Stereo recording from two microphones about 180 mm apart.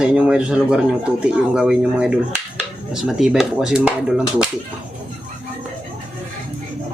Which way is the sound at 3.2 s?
5° right (ahead or behind).